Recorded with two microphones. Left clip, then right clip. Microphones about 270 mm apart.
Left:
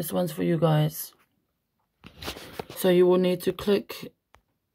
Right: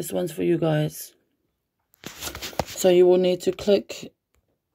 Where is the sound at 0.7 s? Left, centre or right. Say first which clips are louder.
Right 2 dB; centre.